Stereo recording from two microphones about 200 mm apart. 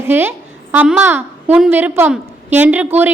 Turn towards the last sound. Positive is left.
turn(degrees=-10)  # may be behind; listen again after turning